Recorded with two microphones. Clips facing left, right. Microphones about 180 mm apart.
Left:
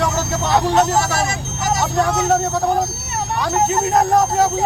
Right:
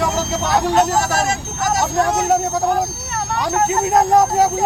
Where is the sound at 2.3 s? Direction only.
15° right (ahead or behind).